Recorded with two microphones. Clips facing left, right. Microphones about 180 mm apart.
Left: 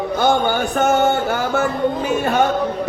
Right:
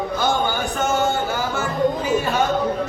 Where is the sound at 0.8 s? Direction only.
60° left (ahead or behind).